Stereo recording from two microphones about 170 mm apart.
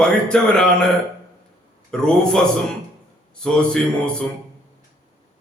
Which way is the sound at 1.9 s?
5° left (ahead or behind).